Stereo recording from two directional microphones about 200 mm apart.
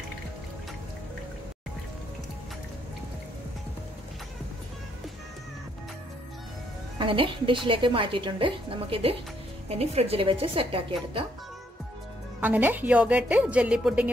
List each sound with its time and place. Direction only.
7.0 s a woman's voice: 25° right (ahead or behind)
12.4 s a woman's voice: 10° right (ahead or behind)